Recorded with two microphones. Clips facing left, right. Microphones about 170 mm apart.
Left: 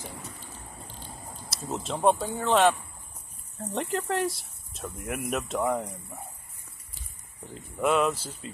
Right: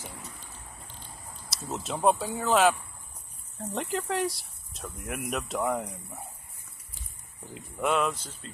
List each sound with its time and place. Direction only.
1.1 s a sound: 25° left (ahead or behind)
1.7 s speech: centre (ahead or behind)
7.8 s speech: centre (ahead or behind)